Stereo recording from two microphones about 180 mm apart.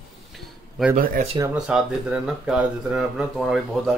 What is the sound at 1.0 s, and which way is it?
Speech, 50° right (ahead or behind).